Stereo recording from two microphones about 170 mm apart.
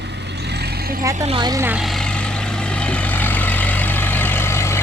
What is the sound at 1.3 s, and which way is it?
Speech, 25° right (ahead or behind).